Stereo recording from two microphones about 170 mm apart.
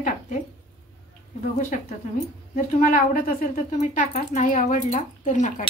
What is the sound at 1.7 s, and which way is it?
A woman's voice, 50° left (ahead or behind).